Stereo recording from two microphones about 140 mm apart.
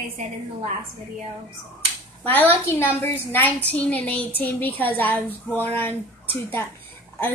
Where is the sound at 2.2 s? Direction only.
15° left (ahead or behind).